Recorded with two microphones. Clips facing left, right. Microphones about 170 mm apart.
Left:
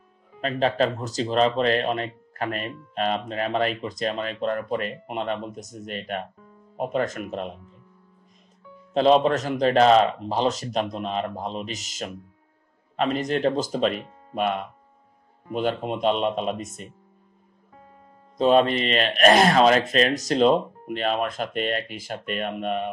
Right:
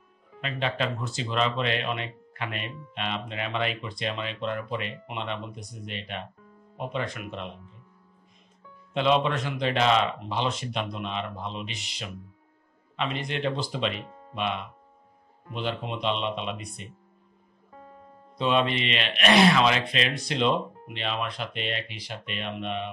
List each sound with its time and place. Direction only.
0.4 s speech: 40° left (ahead or behind)
8.9 s speech: 40° left (ahead or behind)
18.4 s speech: 45° left (ahead or behind)